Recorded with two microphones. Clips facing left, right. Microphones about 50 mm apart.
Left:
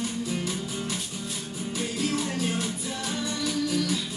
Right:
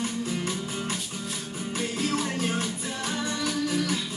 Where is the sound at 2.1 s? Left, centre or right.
Right.